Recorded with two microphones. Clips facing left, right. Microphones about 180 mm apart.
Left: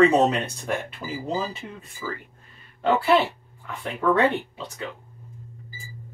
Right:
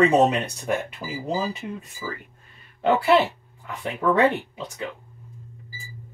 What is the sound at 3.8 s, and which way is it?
Speech, 5° right (ahead or behind).